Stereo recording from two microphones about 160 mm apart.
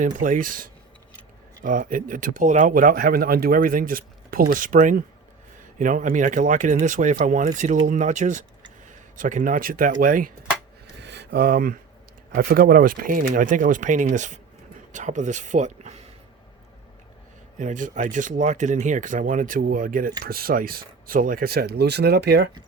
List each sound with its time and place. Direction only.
0.0 s speech: 55° right (ahead or behind)
11.0 s a sound: 90° right; by 11.8 s 65° right (ahead or behind)
12.3 s speech: 60° right (ahead or behind); by 16.0 s 45° right (ahead or behind)
17.6 s speech: 55° right (ahead or behind); by 22.4 s 90° right